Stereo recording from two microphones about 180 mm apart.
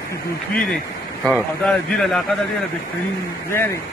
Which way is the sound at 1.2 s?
5° left (ahead or behind).